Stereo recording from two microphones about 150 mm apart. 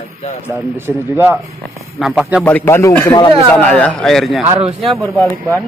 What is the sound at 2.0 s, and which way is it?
Speech, centre (ahead or behind).